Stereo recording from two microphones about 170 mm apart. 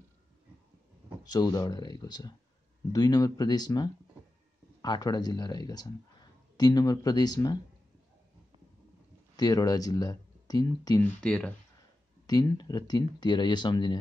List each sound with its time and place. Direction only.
1.2 s speech: 25° left (ahead or behind)
9.4 s speech: 20° left (ahead or behind)
11.1 s speech: 5° left (ahead or behind)
12.3 s speech: 25° left (ahead or behind)